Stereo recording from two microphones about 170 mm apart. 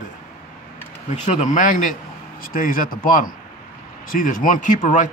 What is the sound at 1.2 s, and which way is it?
Speech, 45° left (ahead or behind).